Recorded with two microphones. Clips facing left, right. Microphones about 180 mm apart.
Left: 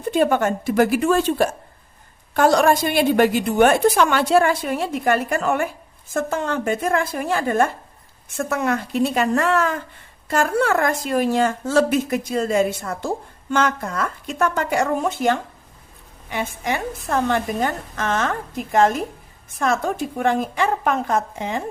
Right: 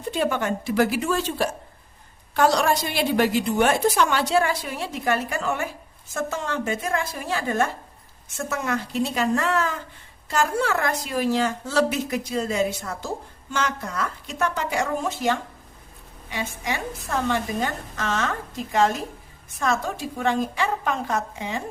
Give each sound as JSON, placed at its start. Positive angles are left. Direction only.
{"t": 0.1, "sound": "a woman's voice", "side_deg": 50}